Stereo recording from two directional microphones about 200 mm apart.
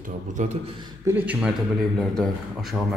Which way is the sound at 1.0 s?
10° right (ahead or behind).